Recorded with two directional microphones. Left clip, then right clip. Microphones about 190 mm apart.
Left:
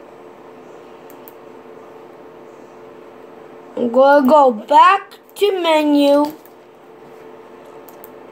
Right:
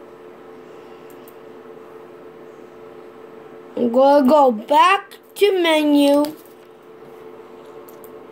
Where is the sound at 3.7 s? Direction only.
20° right (ahead or behind).